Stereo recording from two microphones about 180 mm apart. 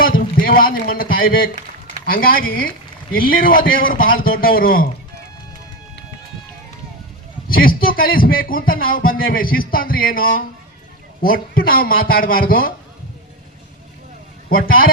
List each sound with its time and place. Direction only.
0.0 s a sound: 50° left (ahead or behind)
2.0 s a man's voice: 50° left (ahead or behind)
7.4 s a man's voice: 55° left (ahead or behind)